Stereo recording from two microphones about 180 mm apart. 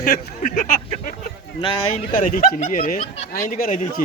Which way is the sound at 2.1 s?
50° left (ahead or behind).